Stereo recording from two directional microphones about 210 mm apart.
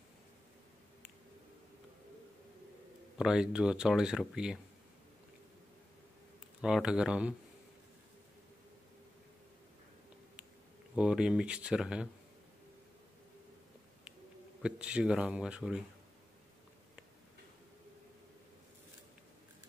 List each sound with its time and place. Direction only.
3.2 s speech: 5° right (ahead or behind)
6.6 s speech: 5° right (ahead or behind)
11.0 s speech: 5° right (ahead or behind)
14.6 s speech: 5° right (ahead or behind)